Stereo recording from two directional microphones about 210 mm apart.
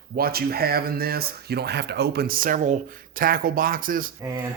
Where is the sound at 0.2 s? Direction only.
45° right (ahead or behind).